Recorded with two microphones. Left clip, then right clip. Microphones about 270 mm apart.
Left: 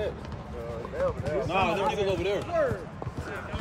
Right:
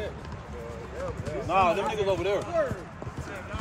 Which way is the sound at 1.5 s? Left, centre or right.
Centre.